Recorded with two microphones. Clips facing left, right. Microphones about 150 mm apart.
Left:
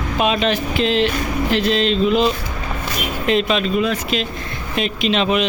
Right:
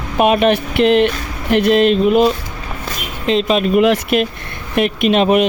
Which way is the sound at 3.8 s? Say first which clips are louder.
Right 7 dB; 65° right (ahead or behind).